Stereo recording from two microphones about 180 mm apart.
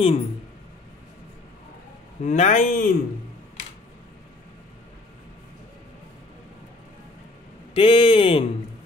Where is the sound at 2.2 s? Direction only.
40° left (ahead or behind).